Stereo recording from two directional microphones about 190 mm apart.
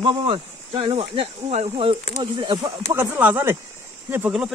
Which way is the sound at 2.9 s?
10° right (ahead or behind).